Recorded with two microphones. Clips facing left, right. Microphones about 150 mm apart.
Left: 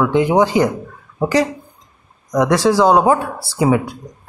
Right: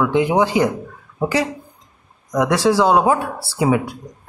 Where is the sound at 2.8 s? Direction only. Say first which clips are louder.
Left 3 dB; 40° left (ahead or behind).